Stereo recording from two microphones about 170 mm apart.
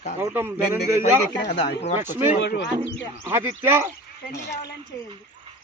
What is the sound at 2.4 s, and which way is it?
Speech, 85° left.